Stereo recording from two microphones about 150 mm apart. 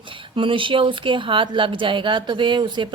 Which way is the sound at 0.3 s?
35° right (ahead or behind).